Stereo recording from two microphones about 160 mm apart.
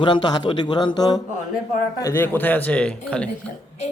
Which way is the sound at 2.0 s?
15° left (ahead or behind).